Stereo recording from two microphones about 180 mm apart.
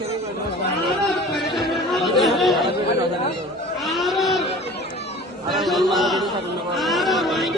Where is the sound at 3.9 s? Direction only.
Centre (ahead or behind).